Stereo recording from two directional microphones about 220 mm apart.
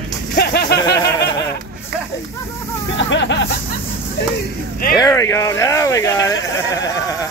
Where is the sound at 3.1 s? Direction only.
55° left (ahead or behind).